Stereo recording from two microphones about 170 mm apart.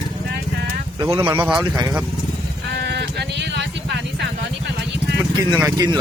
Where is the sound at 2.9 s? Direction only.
85° right.